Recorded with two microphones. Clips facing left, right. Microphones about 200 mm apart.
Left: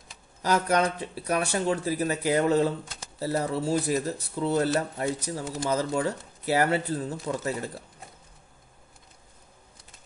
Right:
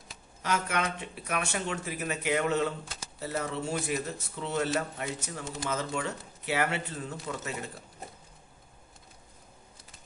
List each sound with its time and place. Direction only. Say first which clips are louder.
0.4 s speech: left 7 dB; 35° left (ahead or behind)